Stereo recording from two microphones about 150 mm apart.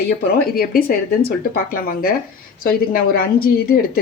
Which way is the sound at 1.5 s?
75° left (ahead or behind).